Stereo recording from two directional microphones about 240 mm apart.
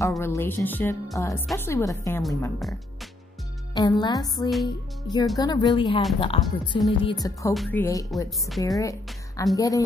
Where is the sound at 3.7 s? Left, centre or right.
Centre.